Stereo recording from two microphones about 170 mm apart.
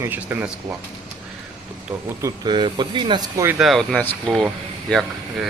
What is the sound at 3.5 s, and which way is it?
Speech, centre (ahead or behind).